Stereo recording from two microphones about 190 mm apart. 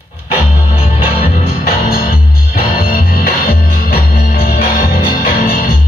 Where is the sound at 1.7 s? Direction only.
50° left (ahead or behind).